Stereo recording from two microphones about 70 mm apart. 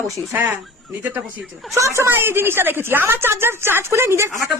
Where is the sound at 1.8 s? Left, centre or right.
Right.